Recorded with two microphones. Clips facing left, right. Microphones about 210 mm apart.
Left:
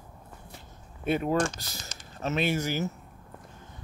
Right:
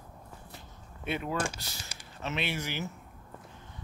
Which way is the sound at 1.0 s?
40° left (ahead or behind).